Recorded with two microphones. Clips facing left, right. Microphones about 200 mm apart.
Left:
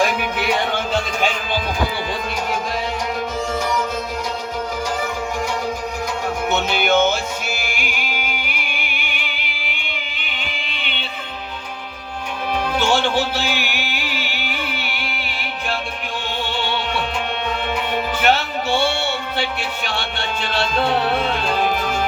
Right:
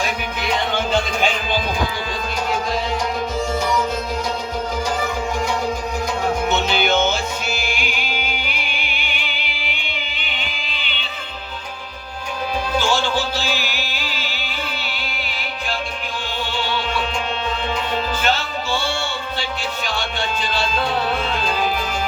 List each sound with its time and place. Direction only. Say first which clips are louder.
6.5 s music: left 4 dB; 55° left (ahead or behind)
12.7 s music: left 2 dB; 65° left (ahead or behind)
16.6 s music: even; 60° left (ahead or behind)
18.2 s music: left 3 dB; 65° left (ahead or behind)